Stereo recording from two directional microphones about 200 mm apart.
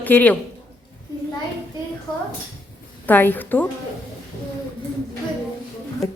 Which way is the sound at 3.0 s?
10° left (ahead or behind).